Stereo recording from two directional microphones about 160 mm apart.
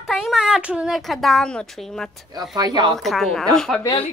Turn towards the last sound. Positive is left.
turn(degrees=35)  # may be behind; listen again after turning